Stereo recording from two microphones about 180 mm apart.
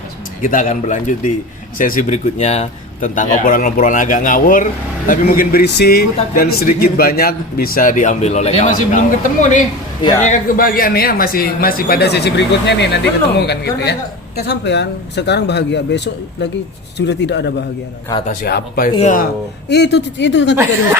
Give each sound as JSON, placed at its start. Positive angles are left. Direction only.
{"t": 0.4, "sound": "a man's voice", "side_deg": 45}
{"t": 18.3, "sound": "speech", "side_deg": 55}
{"t": 18.9, "sound": "a man's voice", "side_deg": 45}
{"t": 19.6, "sound": "a man's voice", "side_deg": 70}